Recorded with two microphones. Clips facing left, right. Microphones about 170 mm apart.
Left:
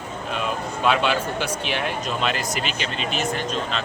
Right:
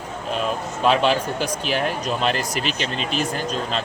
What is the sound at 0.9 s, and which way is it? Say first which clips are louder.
Speech: right 3 dB; 40° right (ahead or behind).